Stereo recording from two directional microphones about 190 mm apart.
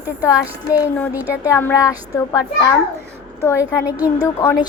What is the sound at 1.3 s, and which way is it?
A child's voice, 15° left (ahead or behind).